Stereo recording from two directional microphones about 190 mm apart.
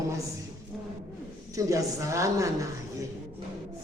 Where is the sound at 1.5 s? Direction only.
15° right (ahead or behind).